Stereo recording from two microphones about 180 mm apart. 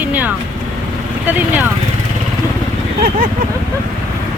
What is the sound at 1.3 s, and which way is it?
Speech, 10° right (ahead or behind).